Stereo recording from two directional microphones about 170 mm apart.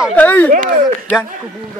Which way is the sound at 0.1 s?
10° left (ahead or behind).